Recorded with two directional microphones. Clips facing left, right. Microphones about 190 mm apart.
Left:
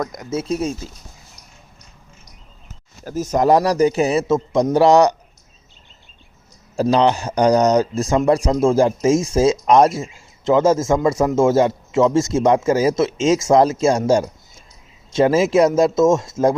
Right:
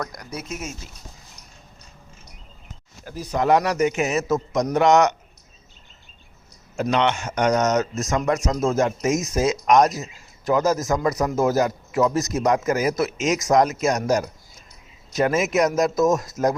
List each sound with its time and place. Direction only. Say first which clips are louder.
0.0 s speech: left 8 dB; 20° left (ahead or behind)
3.0 s a man's voice: left 6 dB; 45° left (ahead or behind)
6.7 s speech: left 6 dB; 35° left (ahead or behind)